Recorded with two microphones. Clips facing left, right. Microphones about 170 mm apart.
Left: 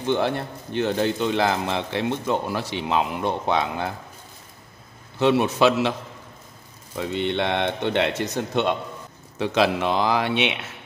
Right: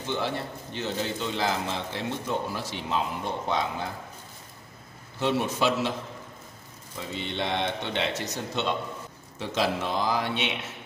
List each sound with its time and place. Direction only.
0.0 s speech: 60° left (ahead or behind)
5.2 s speech: 70° left (ahead or behind)
7.0 s speech: 65° left (ahead or behind)
9.4 s speech: 70° left (ahead or behind)